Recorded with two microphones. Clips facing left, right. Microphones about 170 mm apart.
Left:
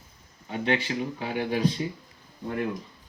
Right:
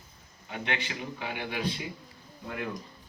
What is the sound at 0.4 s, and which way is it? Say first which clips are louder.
Speech: left 7 dB; 35° left (ahead or behind).